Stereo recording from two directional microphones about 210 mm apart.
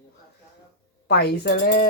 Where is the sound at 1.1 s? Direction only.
55° left (ahead or behind).